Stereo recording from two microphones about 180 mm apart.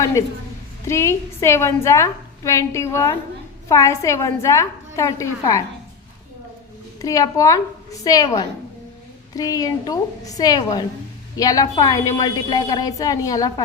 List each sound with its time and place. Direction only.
0.0 s a woman's voice: 15° left (ahead or behind)
7.0 s a woman's voice: 20° left (ahead or behind)